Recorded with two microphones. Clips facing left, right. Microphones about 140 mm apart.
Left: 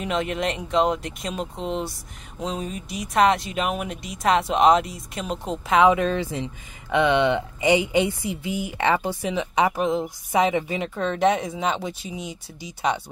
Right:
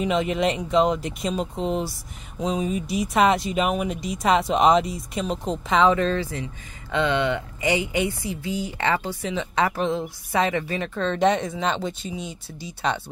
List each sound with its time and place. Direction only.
0.0 s speech: centre (ahead or behind)
5.9 s speech: 15° left (ahead or behind)